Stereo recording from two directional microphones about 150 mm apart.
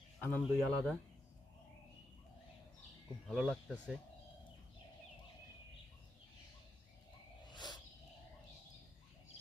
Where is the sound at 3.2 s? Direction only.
Centre (ahead or behind).